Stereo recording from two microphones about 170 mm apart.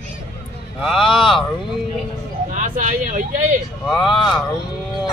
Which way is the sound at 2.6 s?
50° right (ahead or behind).